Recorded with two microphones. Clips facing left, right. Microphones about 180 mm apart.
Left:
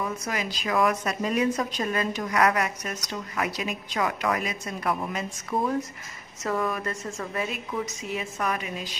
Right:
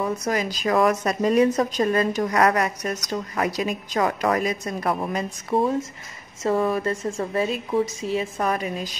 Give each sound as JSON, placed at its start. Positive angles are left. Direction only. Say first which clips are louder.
{"t": 0.0, "sound": "a woman's voice", "louder": "right 6 dB", "side_deg": -40}